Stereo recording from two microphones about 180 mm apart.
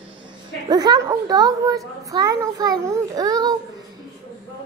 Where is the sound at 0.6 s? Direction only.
20° right (ahead or behind).